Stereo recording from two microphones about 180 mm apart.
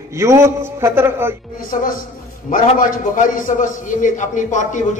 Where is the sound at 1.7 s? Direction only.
50° left (ahead or behind).